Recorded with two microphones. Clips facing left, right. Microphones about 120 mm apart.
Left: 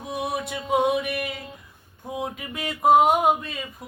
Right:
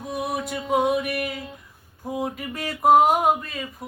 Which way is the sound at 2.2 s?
Centre (ahead or behind).